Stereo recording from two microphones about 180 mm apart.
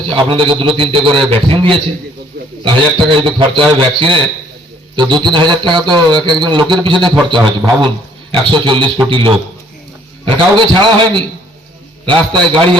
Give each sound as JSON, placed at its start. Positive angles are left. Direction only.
{"t": 0.1, "sound": "speech", "side_deg": -30}